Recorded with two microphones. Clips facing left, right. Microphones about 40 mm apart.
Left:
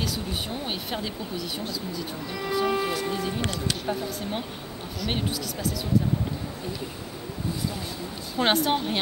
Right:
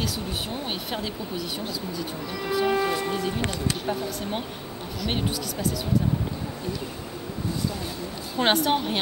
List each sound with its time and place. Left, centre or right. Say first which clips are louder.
0.0 s speech: even; centre
8.4 s speech: right 1 dB; centre